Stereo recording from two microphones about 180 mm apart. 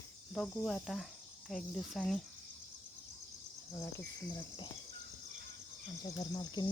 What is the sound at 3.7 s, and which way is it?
Speech, 15° left (ahead or behind).